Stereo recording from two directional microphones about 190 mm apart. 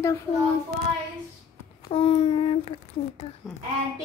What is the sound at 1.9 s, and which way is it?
Speech, 30° left (ahead or behind).